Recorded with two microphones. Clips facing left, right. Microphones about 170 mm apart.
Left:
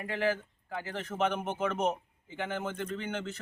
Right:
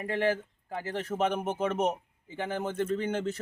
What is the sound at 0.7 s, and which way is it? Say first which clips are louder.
Speech: right 4 dB; 35° right (ahead or behind).